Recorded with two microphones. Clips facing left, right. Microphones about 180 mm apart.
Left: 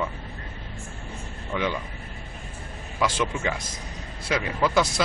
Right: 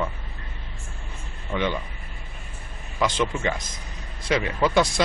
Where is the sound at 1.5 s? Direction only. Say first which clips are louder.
Right 1 dB; 5° right (ahead or behind).